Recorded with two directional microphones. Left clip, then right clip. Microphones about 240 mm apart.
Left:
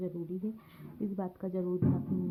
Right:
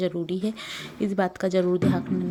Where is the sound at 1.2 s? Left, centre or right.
Right.